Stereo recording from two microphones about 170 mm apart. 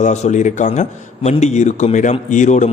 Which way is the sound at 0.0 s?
45° left (ahead or behind).